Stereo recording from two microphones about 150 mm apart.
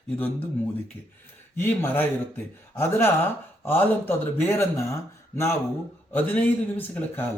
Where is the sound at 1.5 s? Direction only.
15° left (ahead or behind).